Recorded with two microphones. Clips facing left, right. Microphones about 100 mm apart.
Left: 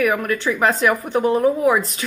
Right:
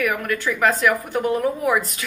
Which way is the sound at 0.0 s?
25° left (ahead or behind).